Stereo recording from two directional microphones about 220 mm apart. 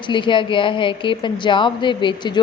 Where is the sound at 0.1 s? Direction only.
20° left (ahead or behind).